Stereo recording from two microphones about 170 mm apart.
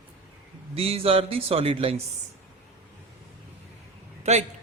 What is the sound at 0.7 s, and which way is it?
A man's voice, 35° right (ahead or behind).